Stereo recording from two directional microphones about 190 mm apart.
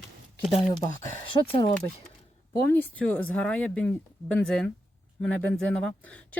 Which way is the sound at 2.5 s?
10° left (ahead or behind).